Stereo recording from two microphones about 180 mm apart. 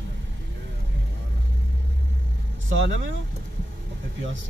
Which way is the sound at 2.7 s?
90° right.